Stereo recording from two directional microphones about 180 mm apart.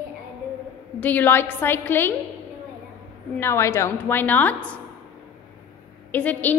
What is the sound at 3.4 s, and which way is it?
A woman's voice, 15° left (ahead or behind).